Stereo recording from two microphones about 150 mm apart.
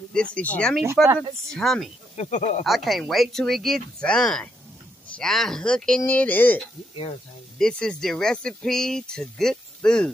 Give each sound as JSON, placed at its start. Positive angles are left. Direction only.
{"t": 0.1, "sound": "speech", "side_deg": 5}
{"t": 2.1, "sound": "speech", "side_deg": 50}
{"t": 2.6, "sound": "speech", "side_deg": 0}